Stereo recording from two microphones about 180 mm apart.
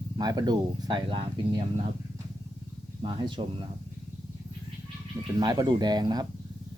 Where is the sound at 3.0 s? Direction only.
25° right (ahead or behind).